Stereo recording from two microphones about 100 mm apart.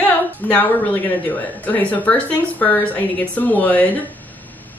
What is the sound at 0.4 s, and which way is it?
Speech, 20° left (ahead or behind).